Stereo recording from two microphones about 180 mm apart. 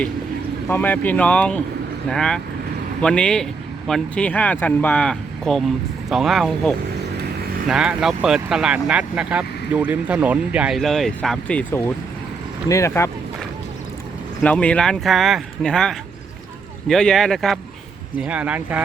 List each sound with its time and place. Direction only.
0.7 s speech: 10° left (ahead or behind)
14.4 s speech: 5° left (ahead or behind)